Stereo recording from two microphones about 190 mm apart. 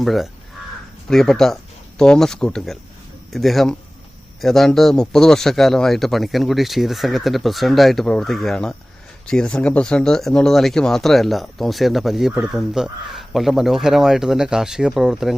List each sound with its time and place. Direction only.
0.0 s speech: centre (ahead or behind)